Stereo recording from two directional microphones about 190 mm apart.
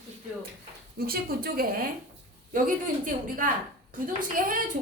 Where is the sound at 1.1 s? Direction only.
50° right (ahead or behind).